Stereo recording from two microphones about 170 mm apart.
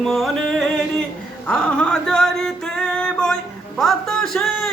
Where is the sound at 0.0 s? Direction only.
Centre (ahead or behind).